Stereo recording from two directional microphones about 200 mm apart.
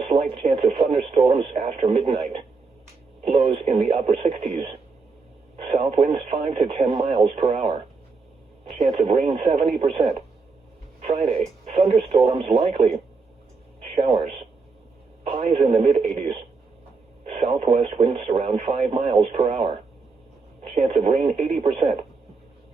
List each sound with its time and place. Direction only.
0.0 s speech: 30° right (ahead or behind)
8.8 s speech: 30° right (ahead or behind)